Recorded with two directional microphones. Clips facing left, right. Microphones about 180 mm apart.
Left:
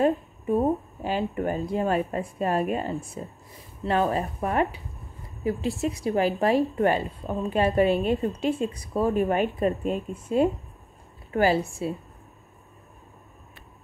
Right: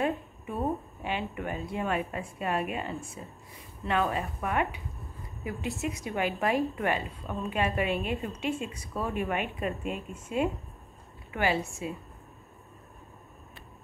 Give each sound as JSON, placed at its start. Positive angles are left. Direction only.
{"t": 0.0, "sound": "speech", "side_deg": 40}